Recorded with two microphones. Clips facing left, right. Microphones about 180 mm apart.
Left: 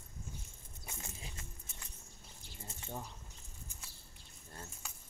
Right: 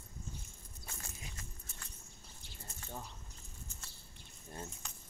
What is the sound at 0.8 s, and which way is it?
Walk, 20° left (ahead or behind).